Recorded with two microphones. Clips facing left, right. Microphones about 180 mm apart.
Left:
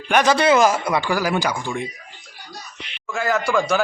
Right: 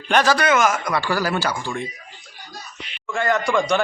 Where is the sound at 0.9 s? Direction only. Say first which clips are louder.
Left 1 dB; 15° left (ahead or behind).